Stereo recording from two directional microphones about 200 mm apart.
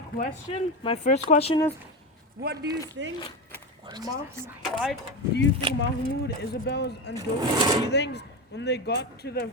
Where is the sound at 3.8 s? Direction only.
20° right (ahead or behind).